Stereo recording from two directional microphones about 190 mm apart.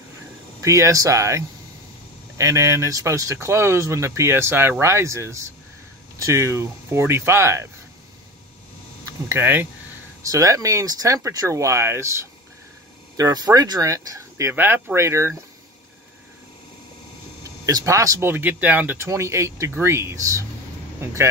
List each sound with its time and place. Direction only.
0.6 s speech: 15° right (ahead or behind)
9.0 s speech: 10° right (ahead or behind)
17.4 s speech: 20° right (ahead or behind)